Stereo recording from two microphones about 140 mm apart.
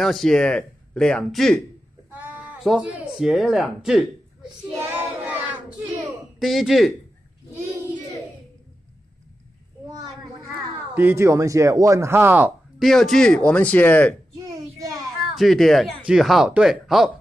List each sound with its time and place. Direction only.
0.0 s speech: centre (ahead or behind)
2.1 s bleat: 10° right (ahead or behind)
2.6 s speech: 5° right (ahead or behind)
4.7 s child singing: 15° right (ahead or behind)
6.4 s speech: centre (ahead or behind)
11.0 s speech: 15° right (ahead or behind)
12.7 s speech: centre (ahead or behind)
15.3 s speech: centre (ahead or behind)